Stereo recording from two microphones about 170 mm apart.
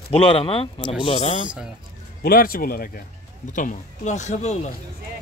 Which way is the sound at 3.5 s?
45° left (ahead or behind).